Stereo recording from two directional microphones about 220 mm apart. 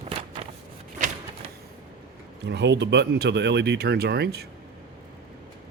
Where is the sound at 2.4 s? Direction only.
50° right (ahead or behind).